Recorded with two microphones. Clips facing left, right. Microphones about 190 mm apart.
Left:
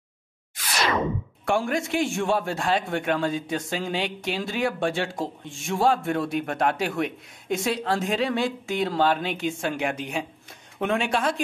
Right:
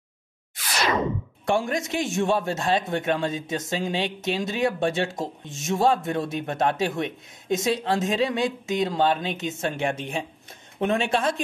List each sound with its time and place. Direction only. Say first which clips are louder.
1.4 s a man's voice: even; 20° right (ahead or behind)